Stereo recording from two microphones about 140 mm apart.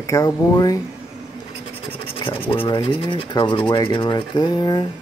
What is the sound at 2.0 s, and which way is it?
Speech, 40° left (ahead or behind).